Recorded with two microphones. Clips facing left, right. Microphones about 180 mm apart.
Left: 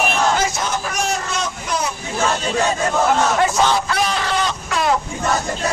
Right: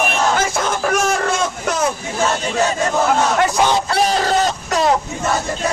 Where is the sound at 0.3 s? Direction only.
50° right (ahead or behind).